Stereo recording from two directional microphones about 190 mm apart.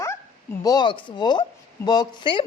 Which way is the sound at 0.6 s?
20° left (ahead or behind).